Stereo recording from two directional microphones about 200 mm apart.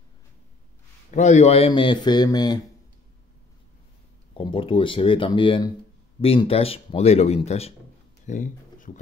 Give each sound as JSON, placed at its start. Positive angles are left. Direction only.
{"t": 1.1, "sound": "speech", "side_deg": 35}
{"t": 4.3, "sound": "speech", "side_deg": 25}